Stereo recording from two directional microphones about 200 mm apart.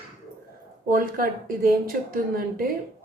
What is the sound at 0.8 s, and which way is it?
A woman's voice, 45° right (ahead or behind).